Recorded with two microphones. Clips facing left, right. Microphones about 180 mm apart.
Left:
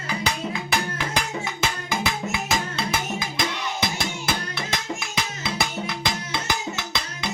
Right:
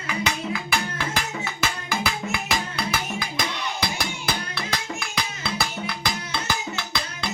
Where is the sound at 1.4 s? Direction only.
20° left (ahead or behind).